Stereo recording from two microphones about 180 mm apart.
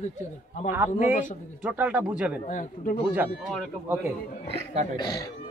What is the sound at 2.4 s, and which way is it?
Speech, 45° left (ahead or behind).